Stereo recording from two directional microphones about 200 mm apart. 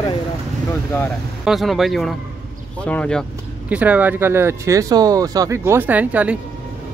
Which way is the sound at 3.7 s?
5° right (ahead or behind).